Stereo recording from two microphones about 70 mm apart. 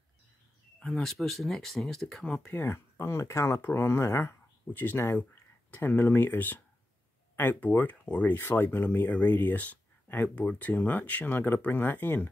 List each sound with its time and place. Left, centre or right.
0.7 s speech: centre
2.7 s speech: left